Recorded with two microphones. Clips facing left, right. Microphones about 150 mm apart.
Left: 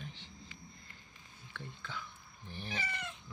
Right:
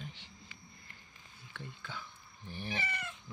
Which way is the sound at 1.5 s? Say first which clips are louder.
Even; 10° right (ahead or behind).